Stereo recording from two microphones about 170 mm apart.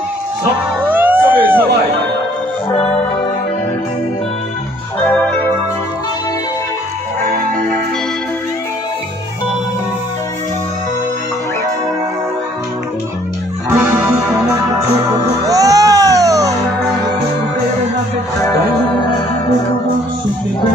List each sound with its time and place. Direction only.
0.8 s a sound: 10° right (ahead or behind)
7.2 s music: 60° right (ahead or behind)
13.7 s music: 15° right (ahead or behind)
15.4 s music: 20° right (ahead or behind)